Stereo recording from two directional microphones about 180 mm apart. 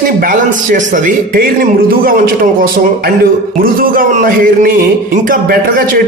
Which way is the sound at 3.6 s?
50° right (ahead or behind).